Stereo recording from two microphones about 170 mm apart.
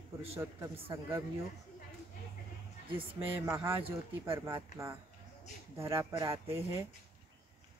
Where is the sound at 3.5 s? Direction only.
10° right (ahead or behind).